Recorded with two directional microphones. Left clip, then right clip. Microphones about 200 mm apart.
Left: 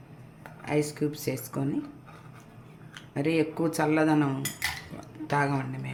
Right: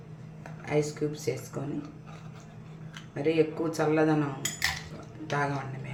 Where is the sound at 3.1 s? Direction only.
45° left (ahead or behind).